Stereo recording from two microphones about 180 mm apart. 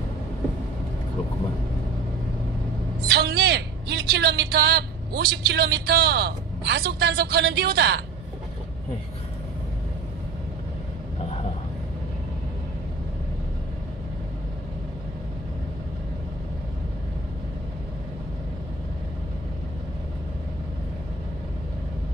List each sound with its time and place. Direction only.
3.1 s a man's voice: 60° right (ahead or behind)